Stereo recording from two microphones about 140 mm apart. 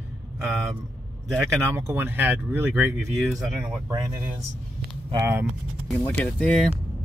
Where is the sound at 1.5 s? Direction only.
20° right (ahead or behind).